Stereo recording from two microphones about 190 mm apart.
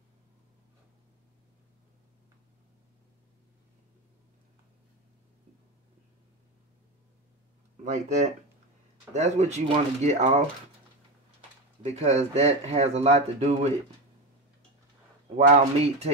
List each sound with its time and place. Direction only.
7.8 s speech: 40° right (ahead or behind)
11.8 s speech: 35° right (ahead or behind)
15.3 s speech: 35° right (ahead or behind)